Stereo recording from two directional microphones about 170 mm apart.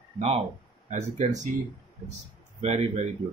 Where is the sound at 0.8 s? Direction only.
45° right (ahead or behind).